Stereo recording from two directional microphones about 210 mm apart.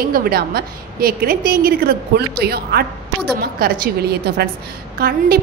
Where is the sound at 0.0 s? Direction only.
45° right (ahead or behind).